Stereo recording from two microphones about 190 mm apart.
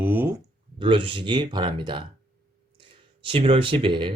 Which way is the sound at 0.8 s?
25° right (ahead or behind).